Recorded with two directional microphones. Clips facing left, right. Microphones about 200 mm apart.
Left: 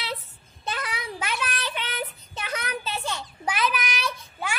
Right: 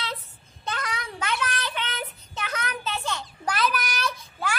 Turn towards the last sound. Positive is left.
turn(degrees=10)  # may be behind; listen again after turning